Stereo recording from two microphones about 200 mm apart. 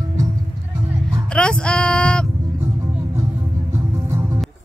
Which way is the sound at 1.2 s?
5° left (ahead or behind).